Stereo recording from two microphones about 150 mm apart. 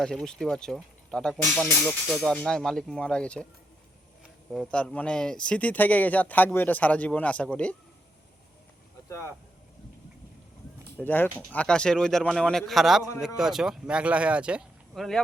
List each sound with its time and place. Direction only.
0.0 s speech: 5° left (ahead or behind)
4.5 s speech: 5° left (ahead or behind)
9.0 s speech: 15° left (ahead or behind)
10.9 s speech: 10° left (ahead or behind)